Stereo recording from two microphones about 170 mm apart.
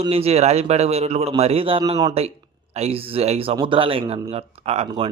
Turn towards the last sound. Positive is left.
turn(degrees=-35)  # may be behind; listen again after turning